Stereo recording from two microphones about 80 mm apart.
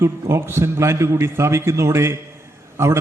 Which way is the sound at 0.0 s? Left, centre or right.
Right.